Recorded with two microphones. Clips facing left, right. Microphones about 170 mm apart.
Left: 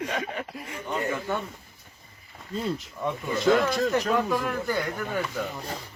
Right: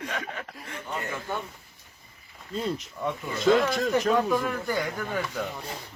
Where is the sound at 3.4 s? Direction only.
Centre (ahead or behind).